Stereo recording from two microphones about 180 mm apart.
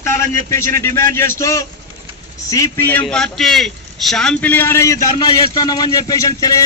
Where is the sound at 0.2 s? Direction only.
15° left (ahead or behind).